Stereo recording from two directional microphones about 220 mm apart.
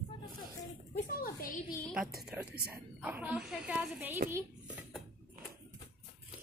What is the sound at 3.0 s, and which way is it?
A woman's voice, 5° right (ahead or behind).